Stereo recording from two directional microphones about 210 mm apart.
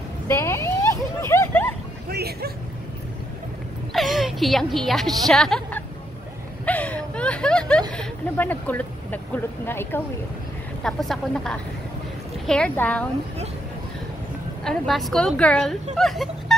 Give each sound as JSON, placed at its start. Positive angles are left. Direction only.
{"t": 0.3, "sound": "a sound", "side_deg": 10}
{"t": 2.0, "sound": "speech", "side_deg": -50}
{"t": 3.9, "sound": "a woman's voice", "side_deg": 0}
{"t": 6.6, "sound": "a sound", "side_deg": 5}
{"t": 7.9, "sound": "a woman's voice", "side_deg": 5}
{"t": 14.6, "sound": "a woman's voice", "side_deg": 0}